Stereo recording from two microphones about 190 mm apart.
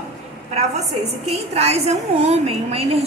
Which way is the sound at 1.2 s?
35° right (ahead or behind).